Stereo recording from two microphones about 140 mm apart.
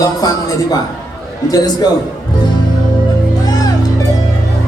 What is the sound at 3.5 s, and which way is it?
Music, 25° left (ahead or behind).